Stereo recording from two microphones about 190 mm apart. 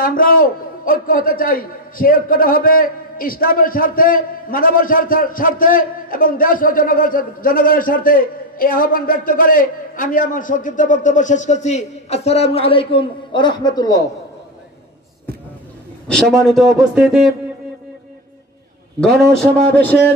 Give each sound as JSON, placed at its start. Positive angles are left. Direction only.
{"t": 0.0, "sound": "a man's voice", "side_deg": 50}
{"t": 16.1, "sound": "a man's voice", "side_deg": 5}
{"t": 19.7, "sound": "a man's voice", "side_deg": 10}